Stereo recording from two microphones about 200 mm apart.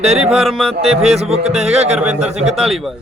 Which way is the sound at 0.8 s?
30° right (ahead or behind).